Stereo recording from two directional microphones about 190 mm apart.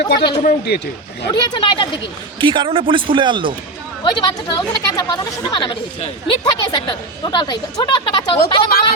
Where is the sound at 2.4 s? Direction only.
25° right (ahead or behind).